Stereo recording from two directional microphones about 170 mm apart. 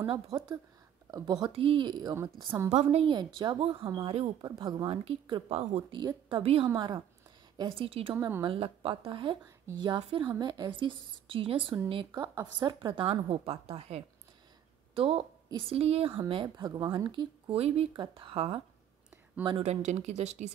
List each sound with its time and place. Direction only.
0.0 s a woman's voice: 30° right (ahead or behind); by 2.7 s 15° right (ahead or behind)
2.7 s a woman's voice: 40° right (ahead or behind)
12.1 s a woman's voice: 20° right (ahead or behind); by 20.5 s 40° right (ahead or behind)